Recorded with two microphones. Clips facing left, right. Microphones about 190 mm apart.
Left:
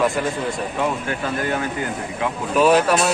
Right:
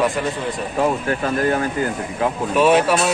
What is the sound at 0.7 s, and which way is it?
Speech, 40° right (ahead or behind).